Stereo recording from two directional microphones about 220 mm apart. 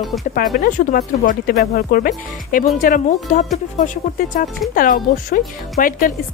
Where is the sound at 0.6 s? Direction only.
40° left (ahead or behind).